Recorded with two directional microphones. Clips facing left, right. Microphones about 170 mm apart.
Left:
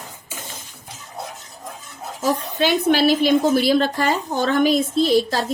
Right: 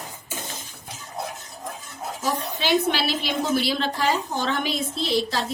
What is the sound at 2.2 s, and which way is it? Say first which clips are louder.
A woman's voice: left 6 dB; 45° left (ahead or behind).